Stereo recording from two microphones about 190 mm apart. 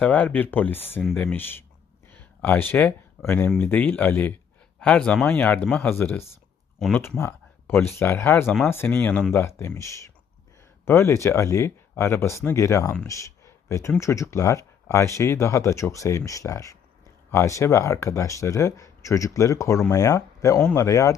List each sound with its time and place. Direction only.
0.0 s speech: 5° left (ahead or behind)
8.4 s speech: centre (ahead or behind)
8.7 s speech: 10° left (ahead or behind)